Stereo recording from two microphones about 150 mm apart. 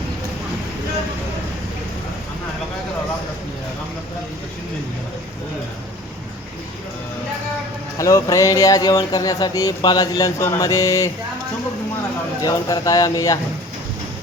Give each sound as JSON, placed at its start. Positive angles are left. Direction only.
{"t": 7.9, "sound": "speech", "side_deg": 20}
{"t": 12.4, "sound": "speech", "side_deg": 25}